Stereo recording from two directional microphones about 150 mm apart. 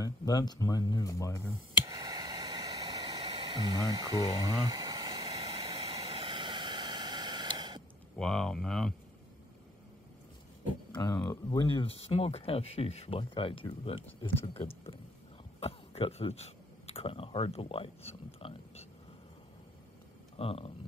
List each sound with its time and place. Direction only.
0.0 s speech: 25° left (ahead or behind)
1.9 s a sound: 25° right (ahead or behind)
5.4 s vehicle: 40° right (ahead or behind)
8.2 s speech: 5° left (ahead or behind)
11.0 s speech: 25° left (ahead or behind)
20.3 s speech: 40° left (ahead or behind)